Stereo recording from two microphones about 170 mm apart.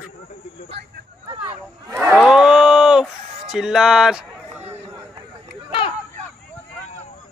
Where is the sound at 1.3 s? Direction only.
30° right (ahead or behind).